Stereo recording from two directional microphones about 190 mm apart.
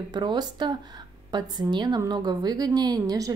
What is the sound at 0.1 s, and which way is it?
A woman's voice, 20° right (ahead or behind).